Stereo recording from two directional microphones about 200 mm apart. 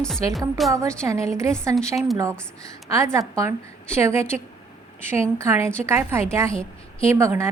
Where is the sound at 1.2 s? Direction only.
15° right (ahead or behind).